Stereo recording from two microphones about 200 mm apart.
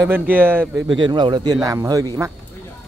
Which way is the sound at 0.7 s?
20° right (ahead or behind).